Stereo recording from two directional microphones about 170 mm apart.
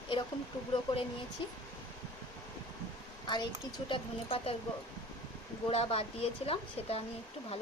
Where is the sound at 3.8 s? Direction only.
30° left (ahead or behind).